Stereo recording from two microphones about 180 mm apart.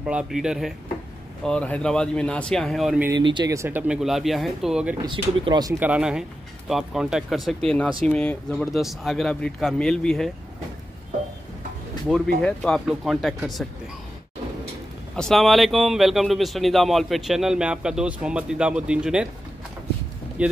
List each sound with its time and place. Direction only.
0.0 s speech: 5° right (ahead or behind)
3.1 s speech: 25° right (ahead or behind); by 4.9 s 5° right (ahead or behind)
5.0 s speech: 25° right (ahead or behind)
5.8 s speech: 5° right (ahead or behind)
12.4 s speech: 5° left (ahead or behind)
15.1 s speech: centre (ahead or behind)
20.4 s speech: 5° right (ahead or behind)